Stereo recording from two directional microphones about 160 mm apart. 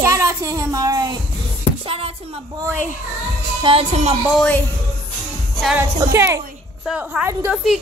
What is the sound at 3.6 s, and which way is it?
Speech, 40° right (ahead or behind).